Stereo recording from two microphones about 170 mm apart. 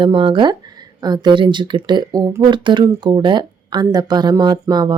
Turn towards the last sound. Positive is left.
turn(degrees=-25)  # may be behind; listen again after turning